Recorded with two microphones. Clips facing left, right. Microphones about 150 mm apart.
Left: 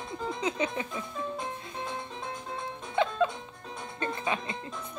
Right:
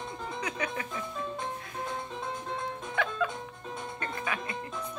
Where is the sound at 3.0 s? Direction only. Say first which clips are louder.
Left 5 dB; 25° left (ahead or behind).